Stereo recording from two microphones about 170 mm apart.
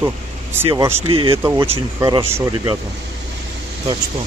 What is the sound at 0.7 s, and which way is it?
Speech, 15° right (ahead or behind).